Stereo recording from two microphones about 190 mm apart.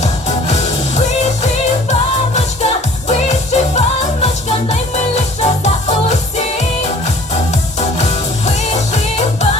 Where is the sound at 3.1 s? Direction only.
35° left (ahead or behind).